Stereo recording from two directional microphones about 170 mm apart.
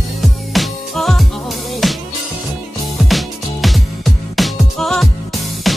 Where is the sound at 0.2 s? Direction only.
Centre (ahead or behind).